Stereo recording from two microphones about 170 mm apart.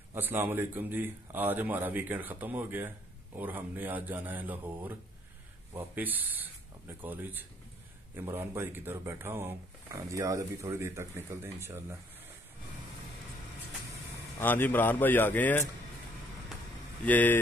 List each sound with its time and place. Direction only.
0.1 s a man's voice: 10° right (ahead or behind)
14.4 s speech: 10° left (ahead or behind)
17.0 s speech: 10° left (ahead or behind)